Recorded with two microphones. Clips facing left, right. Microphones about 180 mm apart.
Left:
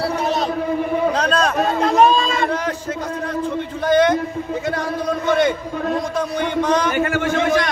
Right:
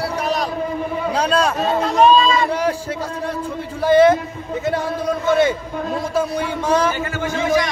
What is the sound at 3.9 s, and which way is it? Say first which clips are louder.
Speech: right 3 dB; 5° right (ahead or behind).